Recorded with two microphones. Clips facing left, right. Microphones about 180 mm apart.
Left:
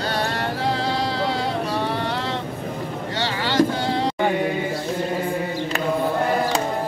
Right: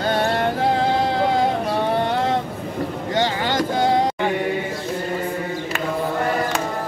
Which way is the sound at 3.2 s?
45° right (ahead or behind).